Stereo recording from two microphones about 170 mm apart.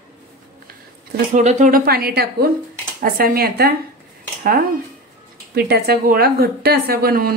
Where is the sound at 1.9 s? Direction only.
65° right (ahead or behind).